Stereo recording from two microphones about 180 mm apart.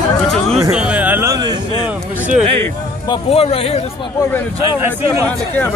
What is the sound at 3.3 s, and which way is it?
Speech, 35° left (ahead or behind).